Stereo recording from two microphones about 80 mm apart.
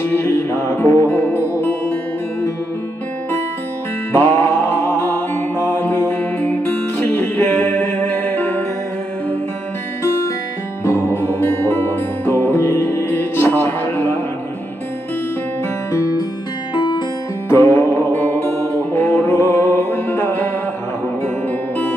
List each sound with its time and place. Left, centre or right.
0.1 s music: left
4.1 s music: left
10.9 s music: left
15.9 s music: left
16.7 s music: left
17.5 s music: left